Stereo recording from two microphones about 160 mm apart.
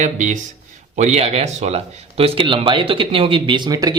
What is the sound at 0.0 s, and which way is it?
Speech, 50° right (ahead or behind).